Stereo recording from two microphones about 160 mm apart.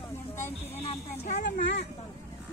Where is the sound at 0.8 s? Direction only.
40° left (ahead or behind).